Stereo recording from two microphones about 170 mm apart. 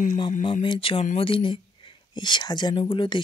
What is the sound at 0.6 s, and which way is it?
Speech, 30° left (ahead or behind).